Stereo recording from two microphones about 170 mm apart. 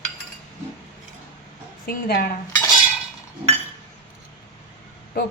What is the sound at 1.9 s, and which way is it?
Speech, 60° left (ahead or behind).